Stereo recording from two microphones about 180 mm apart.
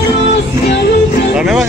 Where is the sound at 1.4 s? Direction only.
5° right (ahead or behind).